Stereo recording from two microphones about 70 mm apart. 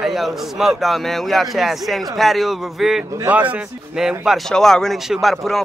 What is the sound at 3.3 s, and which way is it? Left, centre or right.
Speech, right.